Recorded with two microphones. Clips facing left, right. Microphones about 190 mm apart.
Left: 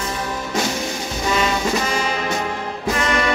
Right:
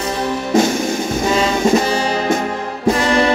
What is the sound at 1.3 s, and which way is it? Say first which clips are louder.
Music: right 6 dB; 30° right (ahead or behind).